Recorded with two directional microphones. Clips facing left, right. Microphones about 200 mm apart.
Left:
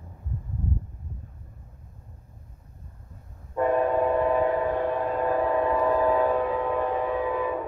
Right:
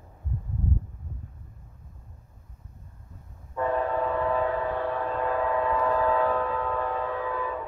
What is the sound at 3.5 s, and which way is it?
Train, 15° left (ahead or behind).